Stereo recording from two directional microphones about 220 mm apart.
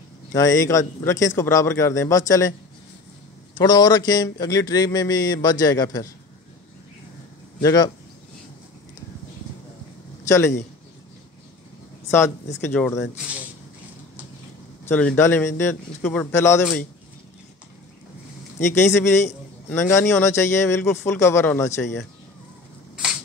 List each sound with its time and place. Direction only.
0.3 s speech: 15° left (ahead or behind)
3.5 s speech: 20° left (ahead or behind)
7.6 s speech: 15° left (ahead or behind)
10.2 s a man's voice: 10° left (ahead or behind)
12.1 s speech: 10° left (ahead or behind)
14.9 s speech: 5° left (ahead or behind)
18.8 s speech: 10° left (ahead or behind)